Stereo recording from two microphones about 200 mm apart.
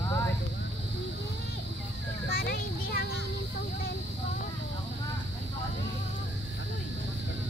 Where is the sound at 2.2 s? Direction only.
50° left (ahead or behind).